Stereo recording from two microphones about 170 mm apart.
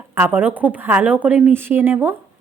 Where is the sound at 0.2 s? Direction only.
10° right (ahead or behind).